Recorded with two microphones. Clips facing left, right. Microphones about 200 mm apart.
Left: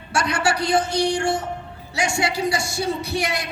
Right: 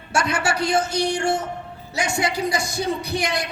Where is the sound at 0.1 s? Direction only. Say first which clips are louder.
Even; 25° right (ahead or behind).